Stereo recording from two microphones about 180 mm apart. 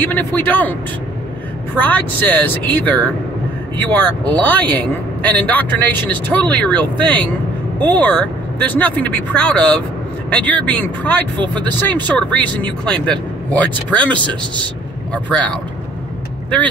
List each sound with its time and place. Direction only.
0.0 s a man's voice: 10° left (ahead or behind)
1.8 s a man's voice: 10° left (ahead or behind)
4.4 s a man's voice: 10° left (ahead or behind)
14.2 s speech: 25° right (ahead or behind)
15.3 s speech: 5° left (ahead or behind)